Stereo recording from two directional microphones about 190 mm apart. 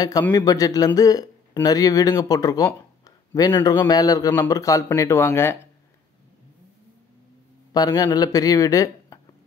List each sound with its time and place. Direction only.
0.3 s a man's voice: 20° left (ahead or behind)
7.7 s speech: 20° left (ahead or behind)